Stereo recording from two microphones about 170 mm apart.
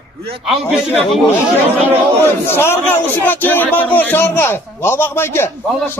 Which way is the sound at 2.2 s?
15° left (ahead or behind).